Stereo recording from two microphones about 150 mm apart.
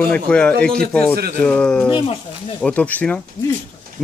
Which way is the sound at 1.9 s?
35° left (ahead or behind).